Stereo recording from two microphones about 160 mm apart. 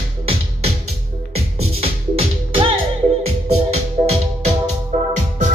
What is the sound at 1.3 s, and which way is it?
Music, 35° right (ahead or behind).